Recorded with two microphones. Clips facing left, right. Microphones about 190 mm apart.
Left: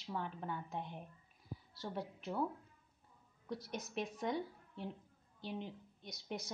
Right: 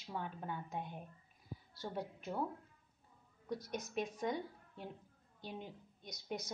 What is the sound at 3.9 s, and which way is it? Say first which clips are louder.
Speech: right 1 dB; centre (ahead or behind).